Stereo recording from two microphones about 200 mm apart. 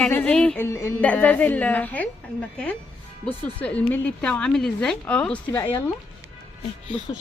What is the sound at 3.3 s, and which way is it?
Speech, 5° left (ahead or behind).